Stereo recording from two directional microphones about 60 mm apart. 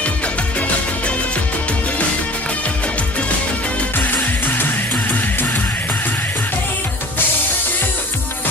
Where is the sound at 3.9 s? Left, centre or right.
Left.